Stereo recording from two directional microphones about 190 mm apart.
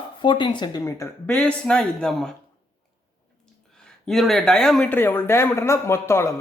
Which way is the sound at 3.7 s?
5° left (ahead or behind).